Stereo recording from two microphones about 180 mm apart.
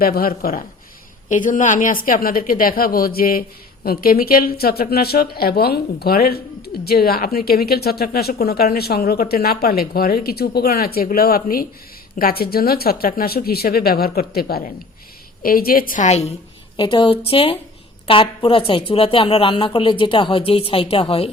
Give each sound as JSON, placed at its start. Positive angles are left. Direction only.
{"t": 0.0, "sound": "a woman's voice", "side_deg": 55}
{"t": 16.7, "sound": "a woman's voice", "side_deg": 25}